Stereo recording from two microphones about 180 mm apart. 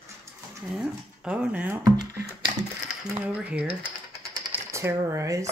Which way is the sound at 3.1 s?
10° right (ahead or behind).